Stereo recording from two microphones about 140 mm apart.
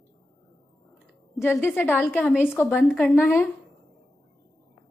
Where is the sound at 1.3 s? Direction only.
20° left (ahead or behind).